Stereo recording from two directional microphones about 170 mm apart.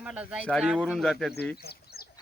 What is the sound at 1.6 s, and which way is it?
Bird, 65° left (ahead or behind).